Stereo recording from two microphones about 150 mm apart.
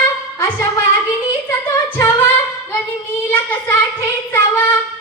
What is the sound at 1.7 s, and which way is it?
A capella, 20° left (ahead or behind).